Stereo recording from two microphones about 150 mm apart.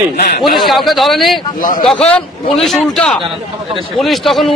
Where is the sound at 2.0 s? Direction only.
5° left (ahead or behind).